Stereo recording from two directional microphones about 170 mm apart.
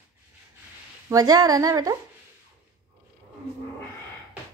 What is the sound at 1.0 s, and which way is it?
Speech, 20° right (ahead or behind).